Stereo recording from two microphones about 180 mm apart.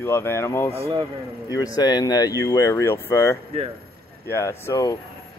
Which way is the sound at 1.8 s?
20° left (ahead or behind).